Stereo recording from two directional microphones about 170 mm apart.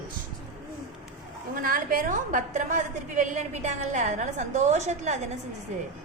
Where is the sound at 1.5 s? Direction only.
55° right (ahead or behind).